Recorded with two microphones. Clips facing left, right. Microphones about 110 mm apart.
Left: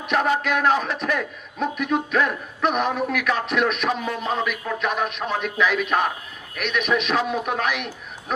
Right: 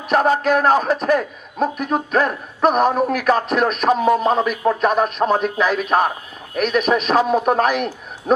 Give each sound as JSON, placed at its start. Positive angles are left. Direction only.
{"t": 0.1, "sound": "a man's voice", "side_deg": -40}